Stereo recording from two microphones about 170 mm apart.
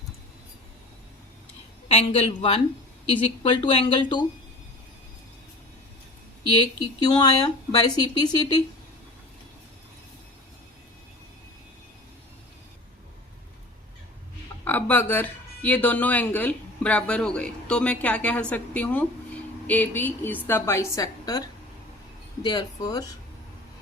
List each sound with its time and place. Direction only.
1.9 s a woman's voice: 35° left (ahead or behind)
6.6 s speech: 25° left (ahead or behind)
14.6 s speech: 10° left (ahead or behind)
22.4 s speech: 25° left (ahead or behind)